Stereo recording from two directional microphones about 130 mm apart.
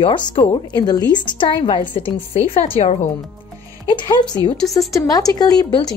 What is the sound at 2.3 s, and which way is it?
Speech, 60° left (ahead or behind).